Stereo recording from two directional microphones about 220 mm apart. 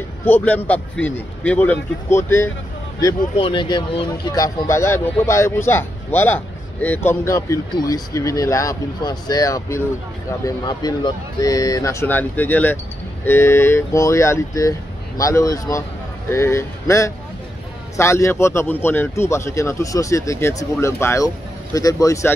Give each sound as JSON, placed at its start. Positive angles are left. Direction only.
{"t": 0.2, "sound": "speech", "side_deg": 10}